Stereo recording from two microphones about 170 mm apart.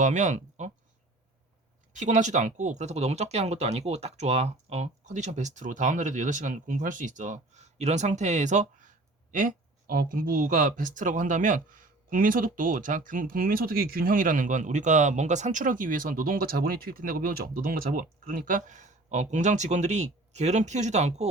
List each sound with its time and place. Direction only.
0.0 s speech: 45° right (ahead or behind)
2.0 s speech: 45° right (ahead or behind)